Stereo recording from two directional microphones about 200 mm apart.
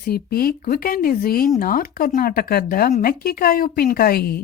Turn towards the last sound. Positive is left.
turn(degrees=50)  # may be behind; listen again after turning